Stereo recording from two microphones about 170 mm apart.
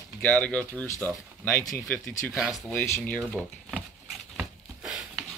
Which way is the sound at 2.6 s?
15° left (ahead or behind).